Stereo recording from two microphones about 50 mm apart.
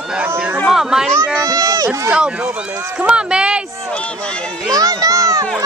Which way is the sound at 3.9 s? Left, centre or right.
Left.